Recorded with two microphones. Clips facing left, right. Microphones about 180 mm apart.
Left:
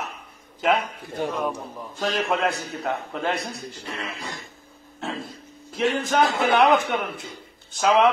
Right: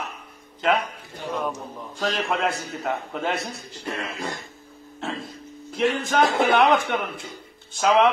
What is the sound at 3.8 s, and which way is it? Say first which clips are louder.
Music: right 6 dB; 50° right (ahead or behind).